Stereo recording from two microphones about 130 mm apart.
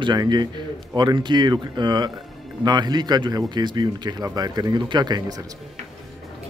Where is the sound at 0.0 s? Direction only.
35° right (ahead or behind).